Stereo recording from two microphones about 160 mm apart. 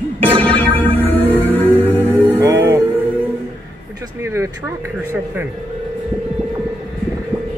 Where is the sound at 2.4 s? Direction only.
15° right (ahead or behind).